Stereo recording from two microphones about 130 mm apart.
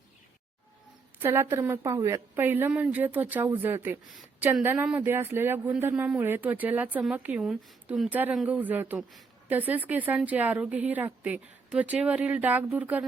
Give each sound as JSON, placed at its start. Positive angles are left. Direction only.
{"t": 1.2, "sound": "speech", "side_deg": -20}
{"t": 8.4, "sound": "speech", "side_deg": -15}